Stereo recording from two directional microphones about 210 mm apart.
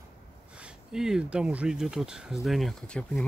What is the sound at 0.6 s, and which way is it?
Speech, 5° right (ahead or behind).